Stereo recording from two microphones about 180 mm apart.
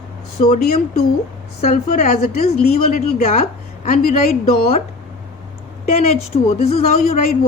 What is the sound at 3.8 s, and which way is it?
Speech, 50° left (ahead or behind).